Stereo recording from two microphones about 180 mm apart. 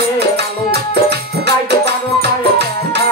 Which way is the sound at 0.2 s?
65° right (ahead or behind).